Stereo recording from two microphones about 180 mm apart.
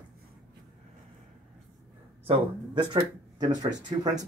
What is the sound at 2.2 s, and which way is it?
Speech, 25° right (ahead or behind).